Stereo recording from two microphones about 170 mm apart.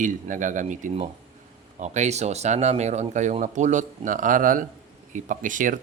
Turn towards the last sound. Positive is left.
turn(degrees=-50)  # may be behind; listen again after turning